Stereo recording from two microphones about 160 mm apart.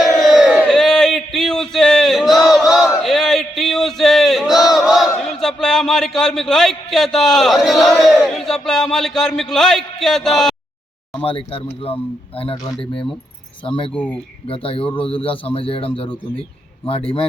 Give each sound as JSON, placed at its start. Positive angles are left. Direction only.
{"t": 0.0, "sound": "crowd", "side_deg": 0}
{"t": 0.6, "sound": "a sound", "side_deg": 0}
{"t": 11.2, "sound": "a man's voice", "side_deg": 35}
{"t": 13.7, "sound": "a man's voice", "side_deg": 35}